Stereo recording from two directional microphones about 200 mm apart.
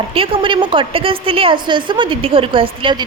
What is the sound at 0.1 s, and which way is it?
A woman's voice, 25° right (ahead or behind).